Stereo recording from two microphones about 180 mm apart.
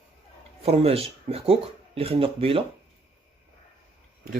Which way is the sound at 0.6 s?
35° right (ahead or behind).